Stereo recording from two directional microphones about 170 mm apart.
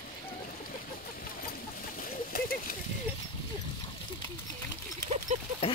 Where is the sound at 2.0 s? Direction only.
55° left (ahead or behind).